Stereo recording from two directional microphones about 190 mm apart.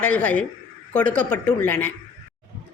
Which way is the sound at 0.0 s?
5° left (ahead or behind).